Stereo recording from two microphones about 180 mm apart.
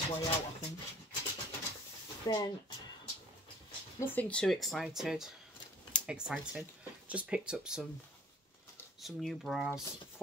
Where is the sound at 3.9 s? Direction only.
10° left (ahead or behind).